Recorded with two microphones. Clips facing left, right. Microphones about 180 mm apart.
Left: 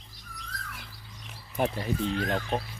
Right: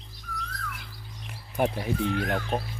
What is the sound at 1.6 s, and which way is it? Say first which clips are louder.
Speech: right 2 dB; 15° right (ahead or behind).